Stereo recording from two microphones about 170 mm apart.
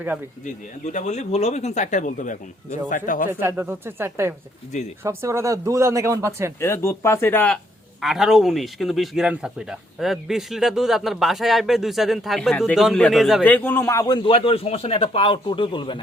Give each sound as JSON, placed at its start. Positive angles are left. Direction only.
{"t": 0.4, "sound": "speech", "side_deg": 45}
{"t": 3.4, "sound": "speech", "side_deg": -15}
{"t": 6.6, "sound": "speech", "side_deg": 15}
{"t": 8.0, "sound": "speech", "side_deg": 0}
{"t": 13.4, "sound": "a man's voice", "side_deg": 10}